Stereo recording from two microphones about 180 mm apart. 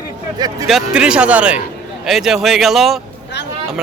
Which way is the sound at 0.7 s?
5° right (ahead or behind).